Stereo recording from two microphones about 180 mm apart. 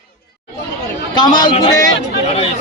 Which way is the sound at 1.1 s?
25° left (ahead or behind).